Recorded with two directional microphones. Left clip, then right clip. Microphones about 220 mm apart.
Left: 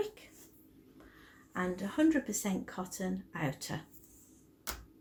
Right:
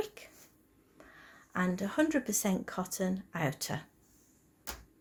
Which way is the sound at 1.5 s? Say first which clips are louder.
Right 2 dB; 50° right (ahead or behind).